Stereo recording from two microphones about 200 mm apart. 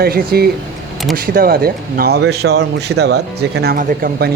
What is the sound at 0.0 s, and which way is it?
Speech, 50° right (ahead or behind).